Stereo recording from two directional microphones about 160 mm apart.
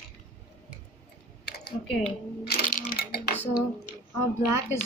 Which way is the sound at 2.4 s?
75° left (ahead or behind).